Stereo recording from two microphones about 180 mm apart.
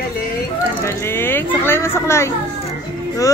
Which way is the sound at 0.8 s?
15° left (ahead or behind).